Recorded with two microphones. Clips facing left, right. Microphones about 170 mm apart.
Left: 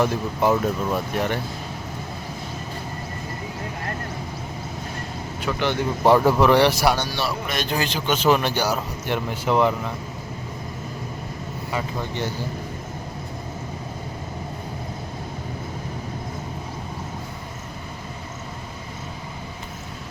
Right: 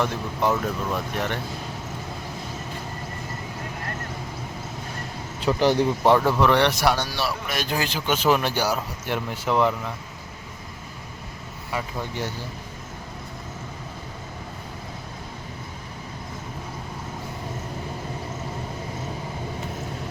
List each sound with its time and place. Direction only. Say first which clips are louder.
0.0 s speech: left 3 dB; 10° left (ahead or behind)
5.4 s speech: right 4 dB; 35° right (ahead or behind)
6.1 s speech: left 4 dB; 10° left (ahead or behind)
11.7 s speech: left 1 dB; centre (ahead or behind)